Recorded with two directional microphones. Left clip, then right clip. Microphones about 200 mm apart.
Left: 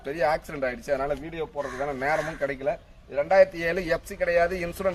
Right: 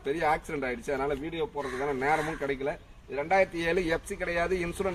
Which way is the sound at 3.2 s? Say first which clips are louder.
Left 6 dB; 20° left (ahead or behind).